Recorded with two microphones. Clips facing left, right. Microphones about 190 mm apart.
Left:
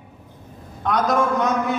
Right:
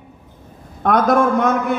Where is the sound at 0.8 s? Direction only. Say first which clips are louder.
Right 5 dB; 55° right (ahead or behind).